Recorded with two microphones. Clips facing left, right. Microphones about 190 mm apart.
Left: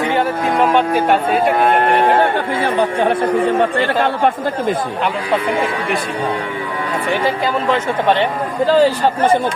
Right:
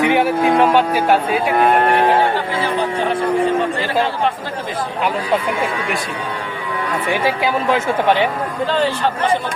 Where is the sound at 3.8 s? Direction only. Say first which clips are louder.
Left 3 dB; 60° left (ahead or behind).